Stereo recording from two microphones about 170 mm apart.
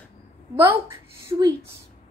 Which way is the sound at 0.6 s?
15° right (ahead or behind).